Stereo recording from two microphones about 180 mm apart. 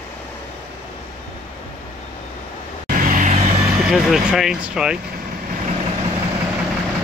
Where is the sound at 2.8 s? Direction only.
45° right (ahead or behind).